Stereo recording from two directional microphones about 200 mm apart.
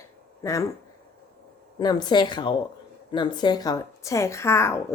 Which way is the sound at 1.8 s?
20° left (ahead or behind).